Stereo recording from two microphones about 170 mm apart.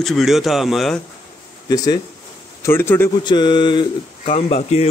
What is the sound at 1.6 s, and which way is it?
A man's voice, 20° left (ahead or behind).